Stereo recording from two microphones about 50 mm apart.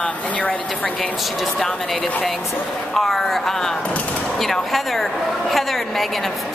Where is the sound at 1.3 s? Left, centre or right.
Centre.